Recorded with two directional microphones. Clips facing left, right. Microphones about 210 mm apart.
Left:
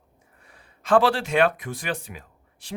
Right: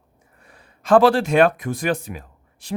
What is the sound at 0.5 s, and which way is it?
Speech, 40° right (ahead or behind).